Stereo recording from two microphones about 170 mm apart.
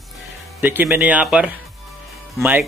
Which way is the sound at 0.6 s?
10° right (ahead or behind).